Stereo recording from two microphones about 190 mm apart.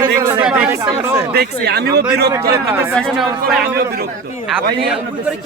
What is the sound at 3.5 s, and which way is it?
Speech, 55° right (ahead or behind).